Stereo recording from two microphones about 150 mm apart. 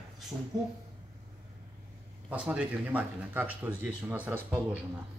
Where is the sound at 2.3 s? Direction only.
5° right (ahead or behind).